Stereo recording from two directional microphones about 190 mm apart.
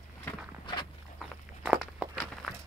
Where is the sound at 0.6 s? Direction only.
25° left (ahead or behind).